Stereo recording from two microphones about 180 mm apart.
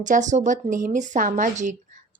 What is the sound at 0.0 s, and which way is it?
A woman's voice, 45° right (ahead or behind).